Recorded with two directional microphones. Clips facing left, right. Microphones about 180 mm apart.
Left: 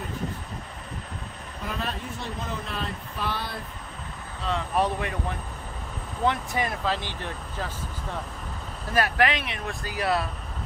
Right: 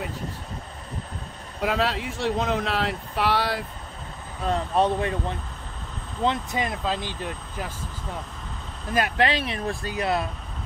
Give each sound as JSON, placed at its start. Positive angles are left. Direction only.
{"t": 1.6, "sound": "speech", "side_deg": -85}
{"t": 4.4, "sound": "speech", "side_deg": -50}
{"t": 4.7, "sound": "speech", "side_deg": -25}
{"t": 6.2, "sound": "speech", "side_deg": -20}
{"t": 8.9, "sound": "speech", "side_deg": -20}